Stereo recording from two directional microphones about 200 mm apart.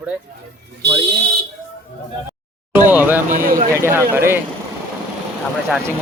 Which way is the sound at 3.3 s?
45° right (ahead or behind).